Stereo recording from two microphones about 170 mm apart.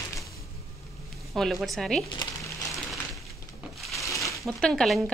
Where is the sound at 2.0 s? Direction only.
25° left (ahead or behind).